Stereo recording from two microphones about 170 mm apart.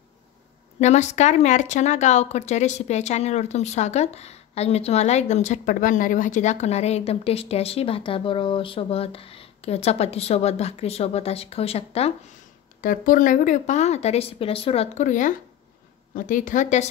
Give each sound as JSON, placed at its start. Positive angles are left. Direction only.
{"t": 0.7, "sound": "speech", "side_deg": 40}
{"t": 12.8, "sound": "speech", "side_deg": 55}